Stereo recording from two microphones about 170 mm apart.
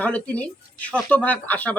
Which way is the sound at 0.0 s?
10° left (ahead or behind).